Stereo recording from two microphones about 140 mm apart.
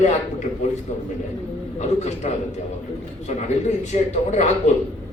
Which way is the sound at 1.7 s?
55° left (ahead or behind).